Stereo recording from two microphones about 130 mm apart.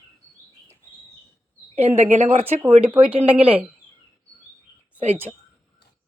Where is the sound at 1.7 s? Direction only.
55° right (ahead or behind).